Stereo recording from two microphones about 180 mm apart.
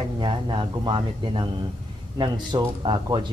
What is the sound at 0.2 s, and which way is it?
Speech, 25° right (ahead or behind).